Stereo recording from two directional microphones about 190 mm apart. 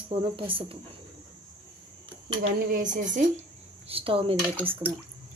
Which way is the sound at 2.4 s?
45° right (ahead or behind).